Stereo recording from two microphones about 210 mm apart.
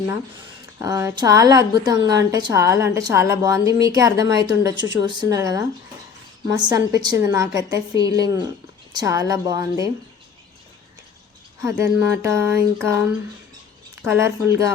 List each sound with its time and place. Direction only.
0.8 s a woman's voice: 15° right (ahead or behind)
11.6 s a woman's voice: 15° right (ahead or behind)
14.0 s a woman's voice: 10° right (ahead or behind)